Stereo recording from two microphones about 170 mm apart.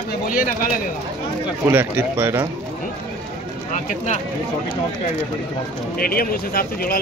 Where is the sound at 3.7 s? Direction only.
45° left (ahead or behind).